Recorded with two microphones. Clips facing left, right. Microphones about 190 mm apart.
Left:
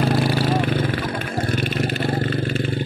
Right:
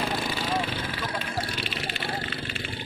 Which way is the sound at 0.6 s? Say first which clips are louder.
Left 9 dB; 50° left (ahead or behind).